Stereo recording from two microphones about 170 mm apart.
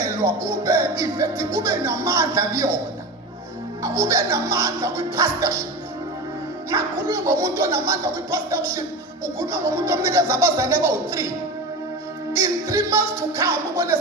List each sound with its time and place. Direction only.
0.4 s speech: 15° right (ahead or behind)
3.8 s speech: 15° right (ahead or behind)
6.7 s speech: 15° right (ahead or behind)
12.3 s speech: 15° right (ahead or behind)